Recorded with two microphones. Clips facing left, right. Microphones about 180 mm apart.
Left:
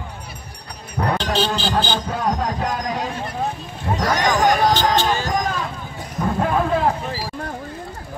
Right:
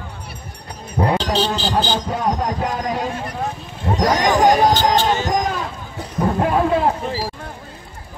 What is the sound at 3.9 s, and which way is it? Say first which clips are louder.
Speech: right 3 dB; 20° right (ahead or behind).